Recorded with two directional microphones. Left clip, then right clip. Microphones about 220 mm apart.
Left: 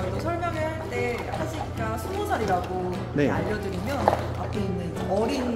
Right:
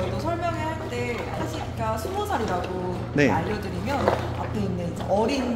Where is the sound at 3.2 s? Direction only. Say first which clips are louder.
Right 3 dB; 10° right (ahead or behind).